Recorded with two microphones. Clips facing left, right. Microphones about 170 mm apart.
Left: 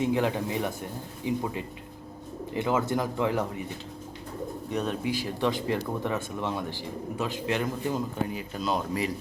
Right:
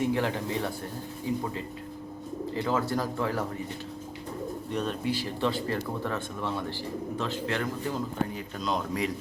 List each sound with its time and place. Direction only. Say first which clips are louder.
0.0 s speech: left 2 dB; 15° left (ahead or behind)
2.5 s speech: left 2 dB; 20° left (ahead or behind)
4.7 s speech: left 1 dB; 10° left (ahead or behind)